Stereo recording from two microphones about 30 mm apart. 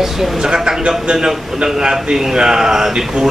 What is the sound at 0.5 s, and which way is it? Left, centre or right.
A man's voice, right.